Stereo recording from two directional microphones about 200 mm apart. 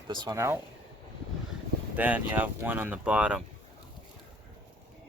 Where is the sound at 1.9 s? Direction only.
10° right (ahead or behind).